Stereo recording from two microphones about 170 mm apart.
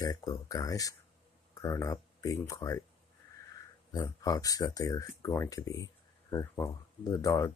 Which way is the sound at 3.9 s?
20° left (ahead or behind).